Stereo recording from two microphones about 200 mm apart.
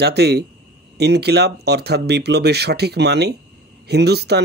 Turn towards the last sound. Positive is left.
turn(degrees=-55)  # may be behind; listen again after turning